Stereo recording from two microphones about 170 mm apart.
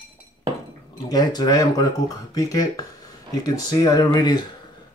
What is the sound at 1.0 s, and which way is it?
Speech, 20° left (ahead or behind).